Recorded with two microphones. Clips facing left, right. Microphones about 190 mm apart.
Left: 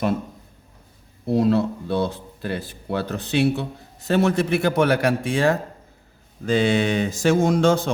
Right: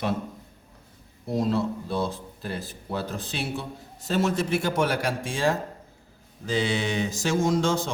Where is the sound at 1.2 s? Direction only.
65° left (ahead or behind).